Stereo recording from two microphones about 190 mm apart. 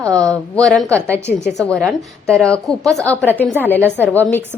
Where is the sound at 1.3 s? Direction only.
45° left (ahead or behind).